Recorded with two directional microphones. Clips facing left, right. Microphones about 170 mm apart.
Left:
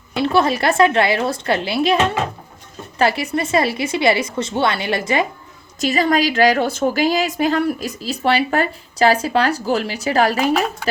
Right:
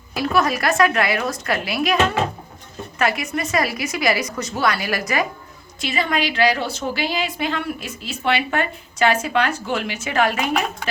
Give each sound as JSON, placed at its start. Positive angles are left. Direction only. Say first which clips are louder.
{"t": 0.1, "sound": "a woman's voice", "louder": "left 3 dB", "side_deg": 25}
{"t": 3.0, "sound": "a woman's voice", "louder": "left 4 dB", "side_deg": 30}
{"t": 5.8, "sound": "a woman's voice", "louder": "left 6 dB", "side_deg": 40}